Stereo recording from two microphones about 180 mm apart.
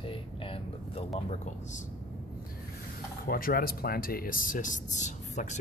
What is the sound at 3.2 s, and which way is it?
Speech, 55° left (ahead or behind).